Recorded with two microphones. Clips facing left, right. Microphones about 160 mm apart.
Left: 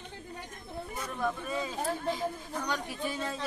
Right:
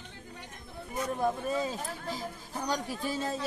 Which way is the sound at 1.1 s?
35° right (ahead or behind).